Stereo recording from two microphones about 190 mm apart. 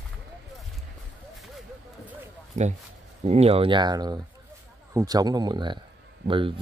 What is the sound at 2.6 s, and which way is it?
Speech, 40° right (ahead or behind).